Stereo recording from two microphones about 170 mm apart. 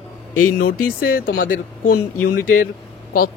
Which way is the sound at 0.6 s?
60° left (ahead or behind).